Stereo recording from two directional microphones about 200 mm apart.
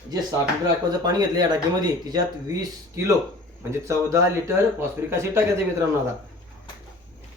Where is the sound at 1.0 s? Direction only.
20° right (ahead or behind).